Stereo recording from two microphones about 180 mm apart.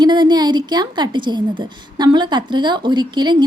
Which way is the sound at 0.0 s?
25° right (ahead or behind).